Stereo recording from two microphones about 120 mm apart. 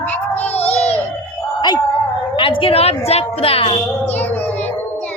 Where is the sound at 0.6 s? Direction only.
60° left (ahead or behind).